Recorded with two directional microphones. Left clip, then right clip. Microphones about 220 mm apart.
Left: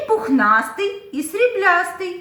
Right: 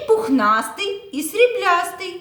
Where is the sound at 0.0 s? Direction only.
50° right (ahead or behind).